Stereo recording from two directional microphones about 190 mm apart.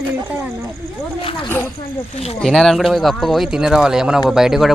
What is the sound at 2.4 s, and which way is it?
Speech, centre (ahead or behind).